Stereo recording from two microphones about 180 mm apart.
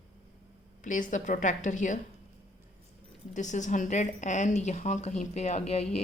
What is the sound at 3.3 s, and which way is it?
A woman's voice, 40° left (ahead or behind).